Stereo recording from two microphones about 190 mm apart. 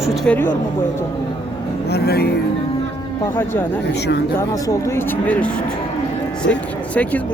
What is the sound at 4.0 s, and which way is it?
Speech, 60° left (ahead or behind).